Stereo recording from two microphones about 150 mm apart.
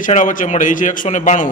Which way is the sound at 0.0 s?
60° left (ahead or behind).